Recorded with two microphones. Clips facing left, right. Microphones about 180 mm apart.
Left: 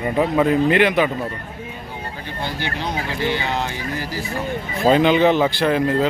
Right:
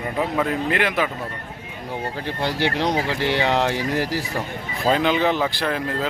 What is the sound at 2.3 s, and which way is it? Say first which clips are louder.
Speech: right 4 dB; 90° right.